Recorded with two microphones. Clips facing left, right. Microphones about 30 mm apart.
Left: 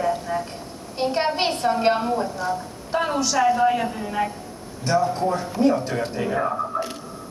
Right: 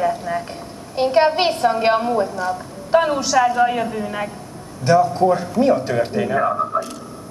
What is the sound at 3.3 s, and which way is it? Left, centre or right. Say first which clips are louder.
A man's voice: right 2 dB; centre.